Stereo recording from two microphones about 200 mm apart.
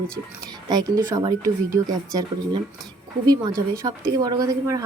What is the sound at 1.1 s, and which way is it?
A woman's voice, 15° right (ahead or behind).